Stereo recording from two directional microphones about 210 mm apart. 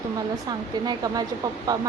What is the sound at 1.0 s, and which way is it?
Speech, 15° right (ahead or behind).